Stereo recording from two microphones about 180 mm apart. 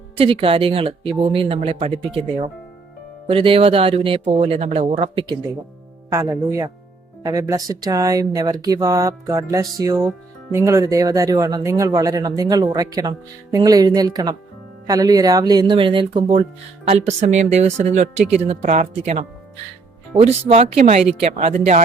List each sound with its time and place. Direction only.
0.2 s speech: 30° right (ahead or behind)
6.1 s speech: 20° right (ahead or behind); by 21.8 s 40° right (ahead or behind)